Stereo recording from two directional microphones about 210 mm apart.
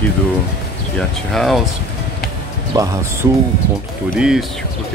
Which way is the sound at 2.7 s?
15° right (ahead or behind).